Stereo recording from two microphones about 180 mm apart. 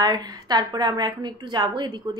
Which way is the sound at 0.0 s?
20° right (ahead or behind).